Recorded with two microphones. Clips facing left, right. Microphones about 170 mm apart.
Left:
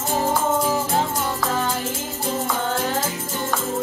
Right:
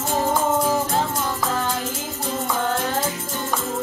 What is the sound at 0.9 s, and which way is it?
Music, 20° left (ahead or behind).